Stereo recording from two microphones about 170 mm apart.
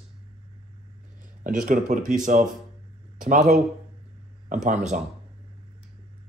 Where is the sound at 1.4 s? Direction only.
50° right (ahead or behind).